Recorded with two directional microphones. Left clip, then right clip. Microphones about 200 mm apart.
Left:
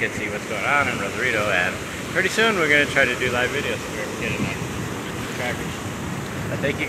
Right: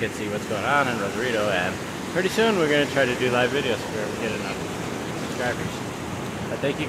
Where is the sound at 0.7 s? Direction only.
20° right (ahead or behind).